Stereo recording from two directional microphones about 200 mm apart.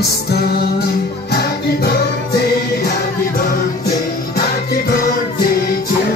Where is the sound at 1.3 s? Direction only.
50° left (ahead or behind).